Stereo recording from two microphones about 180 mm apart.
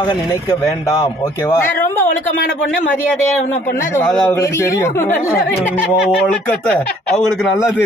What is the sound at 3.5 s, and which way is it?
A man's voice, 10° left (ahead or behind).